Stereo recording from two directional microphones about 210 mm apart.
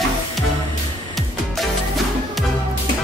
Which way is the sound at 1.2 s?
Centre (ahead or behind).